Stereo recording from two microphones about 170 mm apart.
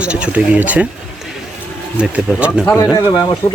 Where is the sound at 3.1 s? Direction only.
25° left (ahead or behind).